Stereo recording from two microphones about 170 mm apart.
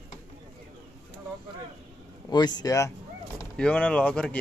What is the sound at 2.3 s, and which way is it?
Speech, 25° left (ahead or behind).